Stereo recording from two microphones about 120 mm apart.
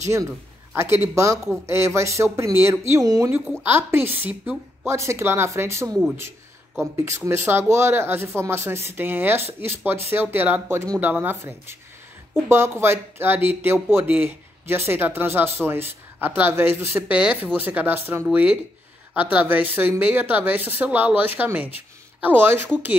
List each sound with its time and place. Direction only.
0.0 s speech: 25° right (ahead or behind)
7.1 s speech: 20° right (ahead or behind)